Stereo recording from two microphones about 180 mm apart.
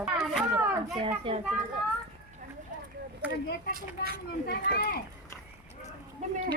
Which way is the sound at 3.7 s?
60° right (ahead or behind).